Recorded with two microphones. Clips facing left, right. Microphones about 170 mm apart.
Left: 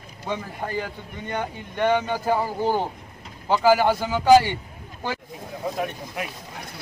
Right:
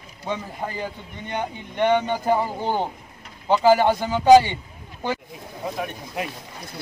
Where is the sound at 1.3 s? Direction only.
20° right (ahead or behind).